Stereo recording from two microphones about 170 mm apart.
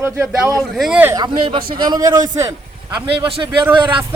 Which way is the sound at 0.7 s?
Centre (ahead or behind).